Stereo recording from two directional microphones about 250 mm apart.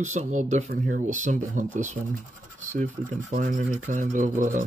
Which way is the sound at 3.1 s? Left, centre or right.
Right.